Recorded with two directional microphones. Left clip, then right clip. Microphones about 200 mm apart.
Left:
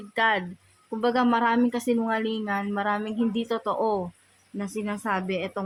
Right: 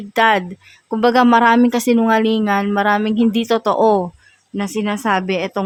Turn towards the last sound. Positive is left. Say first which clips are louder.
# right 10 dB
turn(degrees=-50)  # may be behind; listen again after turning